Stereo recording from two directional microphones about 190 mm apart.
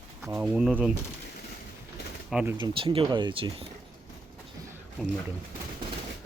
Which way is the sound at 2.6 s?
30° right (ahead or behind).